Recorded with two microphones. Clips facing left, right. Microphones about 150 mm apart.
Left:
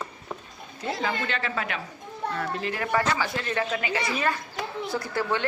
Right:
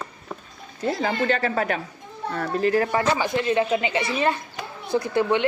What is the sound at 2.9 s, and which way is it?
A woman's voice, 20° right (ahead or behind).